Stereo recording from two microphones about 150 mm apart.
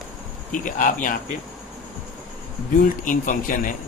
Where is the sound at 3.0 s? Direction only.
60° left (ahead or behind).